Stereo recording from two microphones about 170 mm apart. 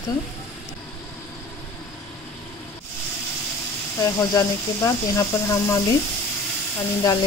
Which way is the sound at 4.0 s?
20° left (ahead or behind).